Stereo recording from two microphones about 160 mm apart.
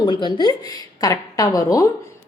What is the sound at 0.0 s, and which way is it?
A woman's voice, 30° left (ahead or behind).